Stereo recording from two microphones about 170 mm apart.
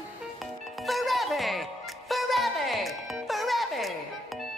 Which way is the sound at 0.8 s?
Centre (ahead or behind).